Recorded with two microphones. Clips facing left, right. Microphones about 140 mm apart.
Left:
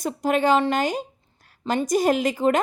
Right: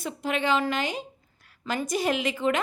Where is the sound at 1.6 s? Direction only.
30° left (ahead or behind).